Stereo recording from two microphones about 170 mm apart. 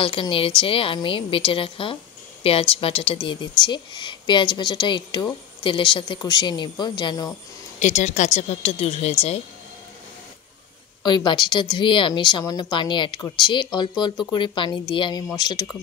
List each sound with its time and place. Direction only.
0.0 s a woman's voice: 30° left (ahead or behind)
7.8 s a woman's voice: 45° left (ahead or behind)
11.0 s speech: 25° left (ahead or behind)